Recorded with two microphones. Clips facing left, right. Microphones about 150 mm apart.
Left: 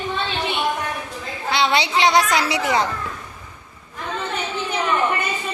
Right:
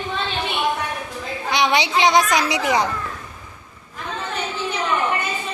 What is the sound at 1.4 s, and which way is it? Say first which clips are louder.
A child's voice: even; 15° right (ahead or behind).